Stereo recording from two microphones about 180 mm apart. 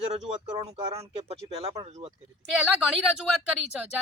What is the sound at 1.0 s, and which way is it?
Speech, 35° right (ahead or behind).